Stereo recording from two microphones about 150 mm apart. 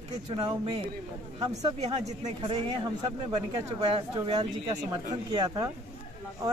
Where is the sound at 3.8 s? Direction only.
35° right (ahead or behind).